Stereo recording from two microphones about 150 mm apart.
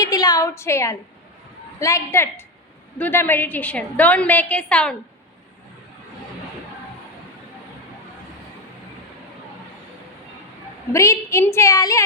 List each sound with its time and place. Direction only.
0.0 s a woman's voice: 25° left (ahead or behind); by 4.9 s 5° left (ahead or behind)
10.9 s a woman's voice: 20° left (ahead or behind)